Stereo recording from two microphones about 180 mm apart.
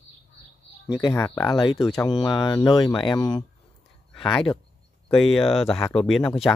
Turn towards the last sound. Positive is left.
turn(degrees=5)  # may be behind; listen again after turning